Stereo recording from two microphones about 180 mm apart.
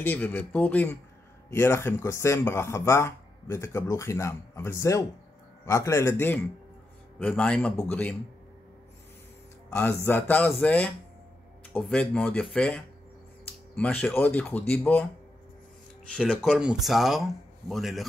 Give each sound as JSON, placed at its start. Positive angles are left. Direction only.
{"t": 0.0, "sound": "speech", "side_deg": 10}
{"t": 9.7, "sound": "speech", "side_deg": 10}
{"t": 16.1, "sound": "speech", "side_deg": 0}